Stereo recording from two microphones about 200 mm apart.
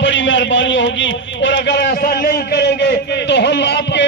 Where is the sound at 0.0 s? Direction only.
65° left (ahead or behind).